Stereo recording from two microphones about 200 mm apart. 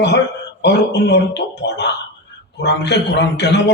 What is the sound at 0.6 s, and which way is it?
A man's voice, 55° left (ahead or behind).